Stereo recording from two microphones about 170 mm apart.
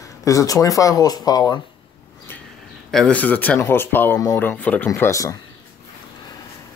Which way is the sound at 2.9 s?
5° left (ahead or behind).